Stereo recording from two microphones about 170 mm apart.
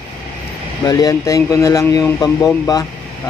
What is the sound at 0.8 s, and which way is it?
A man's voice, 20° left (ahead or behind).